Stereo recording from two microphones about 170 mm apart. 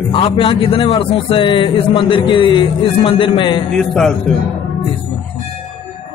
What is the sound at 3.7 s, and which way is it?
Speech, 5° left (ahead or behind).